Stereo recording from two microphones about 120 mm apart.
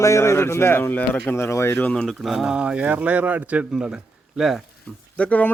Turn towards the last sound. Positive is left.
turn(degrees=10)  # may be behind; listen again after turning